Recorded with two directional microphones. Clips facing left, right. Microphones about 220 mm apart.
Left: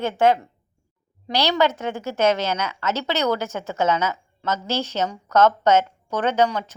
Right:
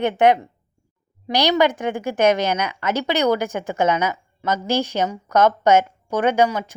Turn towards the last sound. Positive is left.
turn(degrees=-10)  # may be behind; listen again after turning